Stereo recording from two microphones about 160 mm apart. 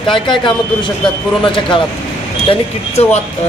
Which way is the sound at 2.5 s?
40° left (ahead or behind).